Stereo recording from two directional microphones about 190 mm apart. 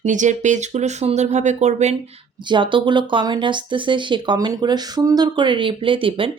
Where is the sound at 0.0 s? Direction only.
40° right (ahead or behind).